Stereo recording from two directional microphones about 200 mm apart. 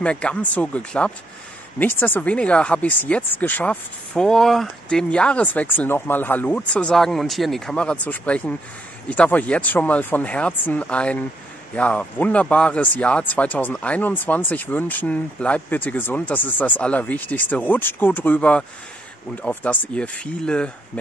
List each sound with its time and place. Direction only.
0.0 s speech: 5° left (ahead or behind)